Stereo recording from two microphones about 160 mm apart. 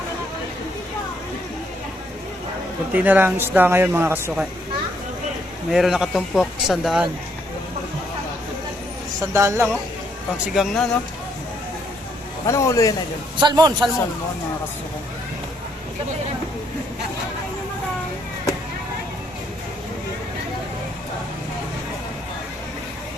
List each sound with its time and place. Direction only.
2.9 s speech: 10° right (ahead or behind)
5.7 s speech: centre (ahead or behind)
9.3 s speech: 15° right (ahead or behind)
10.3 s speech: centre (ahead or behind)
12.5 s a man's voice: 20° left (ahead or behind)
13.3 s a man's voice: 25° right (ahead or behind)